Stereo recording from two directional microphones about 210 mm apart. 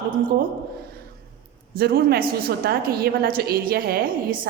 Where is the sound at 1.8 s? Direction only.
45° right (ahead or behind).